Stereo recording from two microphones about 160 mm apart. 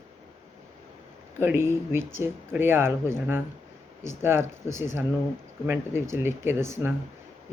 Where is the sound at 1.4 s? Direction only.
15° right (ahead or behind).